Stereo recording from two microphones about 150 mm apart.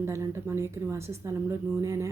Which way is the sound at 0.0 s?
15° right (ahead or behind).